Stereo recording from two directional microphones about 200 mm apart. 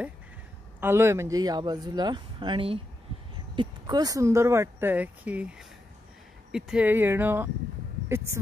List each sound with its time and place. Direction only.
0.7 s speech: 10° right (ahead or behind)